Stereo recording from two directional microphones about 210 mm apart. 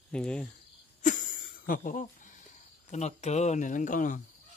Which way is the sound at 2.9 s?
30° left (ahead or behind).